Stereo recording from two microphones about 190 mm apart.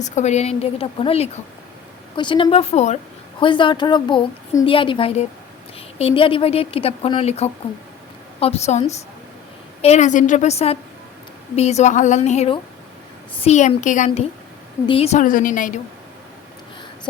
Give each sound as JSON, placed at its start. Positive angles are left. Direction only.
{"t": 0.0, "sound": "speech", "side_deg": 35}
{"t": 3.4, "sound": "a woman's voice", "side_deg": 25}